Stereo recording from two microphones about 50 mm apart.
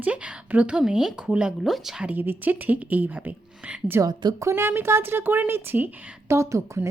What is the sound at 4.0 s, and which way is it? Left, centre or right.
Speech, right.